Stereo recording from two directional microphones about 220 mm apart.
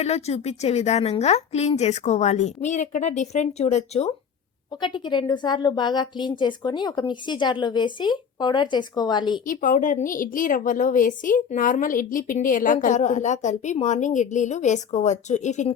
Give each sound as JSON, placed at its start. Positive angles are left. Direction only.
{"t": 0.0, "sound": "a woman's voice", "side_deg": 30}
{"t": 9.5, "sound": "a woman's voice", "side_deg": 35}